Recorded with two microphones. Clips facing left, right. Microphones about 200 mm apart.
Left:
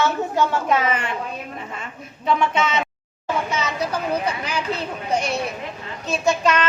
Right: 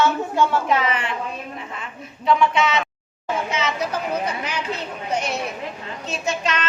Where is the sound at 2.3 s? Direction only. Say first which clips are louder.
Right 2 dB; 45° left (ahead or behind).